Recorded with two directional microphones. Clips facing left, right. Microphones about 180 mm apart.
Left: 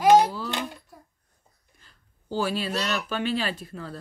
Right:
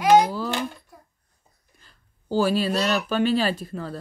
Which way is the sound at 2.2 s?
40° right (ahead or behind).